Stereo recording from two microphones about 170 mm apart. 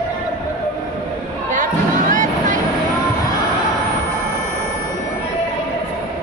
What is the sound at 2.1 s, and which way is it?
Vehicle, 50° right (ahead or behind).